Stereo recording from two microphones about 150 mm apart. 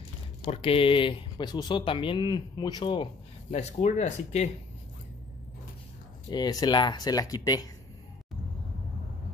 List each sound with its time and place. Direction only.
0.5 s speech: 40° left (ahead or behind)
3.4 s speech: 50° left (ahead or behind)
6.3 s speech: 25° left (ahead or behind)